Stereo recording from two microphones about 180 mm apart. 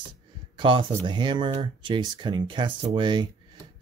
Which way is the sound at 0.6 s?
25° right (ahead or behind).